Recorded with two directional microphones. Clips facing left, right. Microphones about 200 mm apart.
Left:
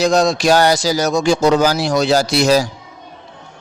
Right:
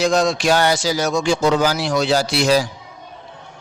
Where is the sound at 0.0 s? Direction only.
40° left (ahead or behind).